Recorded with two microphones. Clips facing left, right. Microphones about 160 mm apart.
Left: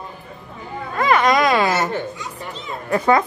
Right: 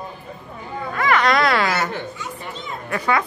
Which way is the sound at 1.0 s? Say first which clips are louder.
Left 2 dB; 20° left (ahead or behind).